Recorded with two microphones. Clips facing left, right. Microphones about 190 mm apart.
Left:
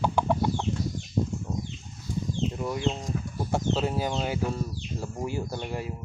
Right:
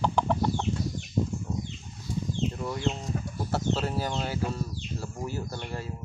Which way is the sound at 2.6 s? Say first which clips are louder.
Left 2 dB; 10° left (ahead or behind).